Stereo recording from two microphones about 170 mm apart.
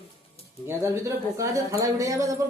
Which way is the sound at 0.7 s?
15° right (ahead or behind).